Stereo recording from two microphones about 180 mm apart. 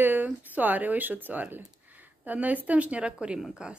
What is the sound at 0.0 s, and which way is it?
Speech, 10° right (ahead or behind).